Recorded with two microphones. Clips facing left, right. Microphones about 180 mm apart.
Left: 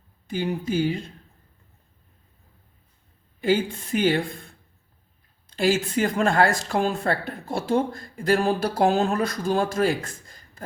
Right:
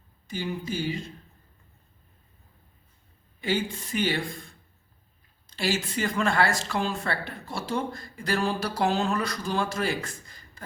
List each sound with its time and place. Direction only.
0.3 s speech: 55° left (ahead or behind)
3.4 s speech: 50° left (ahead or behind)